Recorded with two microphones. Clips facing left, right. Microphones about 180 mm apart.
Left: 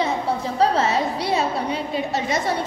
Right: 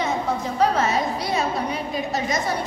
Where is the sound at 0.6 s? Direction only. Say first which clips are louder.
Left 1 dB; 30° left (ahead or behind).